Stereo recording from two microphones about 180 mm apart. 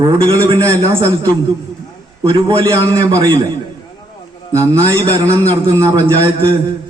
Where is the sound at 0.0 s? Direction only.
30° right (ahead or behind).